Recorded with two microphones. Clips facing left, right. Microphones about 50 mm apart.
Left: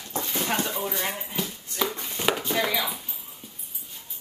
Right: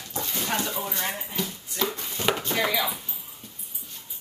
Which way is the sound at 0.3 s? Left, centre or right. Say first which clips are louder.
Left 1 dB; left.